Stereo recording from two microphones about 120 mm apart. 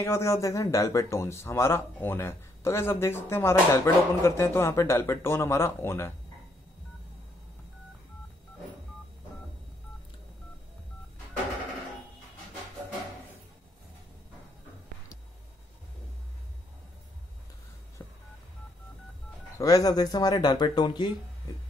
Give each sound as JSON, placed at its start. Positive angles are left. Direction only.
{"t": 0.0, "sound": "speech", "side_deg": 25}
{"t": 18.0, "sound": "telephone dialing", "side_deg": 20}
{"t": 19.6, "sound": "speech", "side_deg": 30}